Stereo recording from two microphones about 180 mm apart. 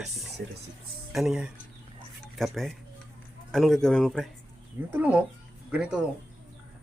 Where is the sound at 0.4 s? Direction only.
70° right (ahead or behind).